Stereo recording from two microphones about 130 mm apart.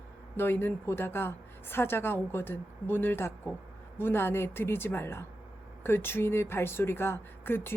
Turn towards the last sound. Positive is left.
turn(degrees=15)  # may be behind; listen again after turning